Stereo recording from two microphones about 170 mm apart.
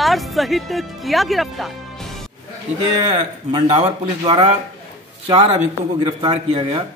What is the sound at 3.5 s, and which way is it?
Speech, 30° right (ahead or behind).